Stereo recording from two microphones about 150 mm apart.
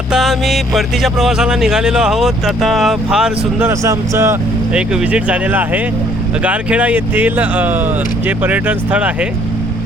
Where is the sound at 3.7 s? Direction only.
20° right (ahead or behind).